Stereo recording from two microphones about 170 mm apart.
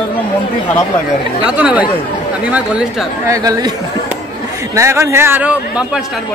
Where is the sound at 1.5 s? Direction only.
5° right (ahead or behind).